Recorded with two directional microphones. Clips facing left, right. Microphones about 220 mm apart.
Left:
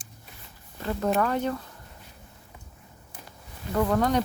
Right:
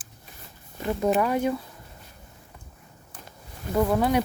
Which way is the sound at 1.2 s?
10° right (ahead or behind).